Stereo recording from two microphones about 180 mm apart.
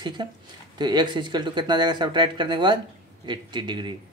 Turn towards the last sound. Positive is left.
turn(degrees=-25)  # may be behind; listen again after turning